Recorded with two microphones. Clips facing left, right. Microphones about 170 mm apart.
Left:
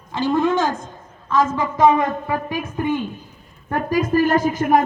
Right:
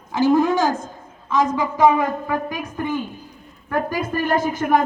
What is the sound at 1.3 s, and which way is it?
Speech, 15° right (ahead or behind).